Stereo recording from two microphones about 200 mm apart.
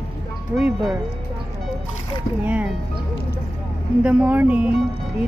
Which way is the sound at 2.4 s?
5° right (ahead or behind).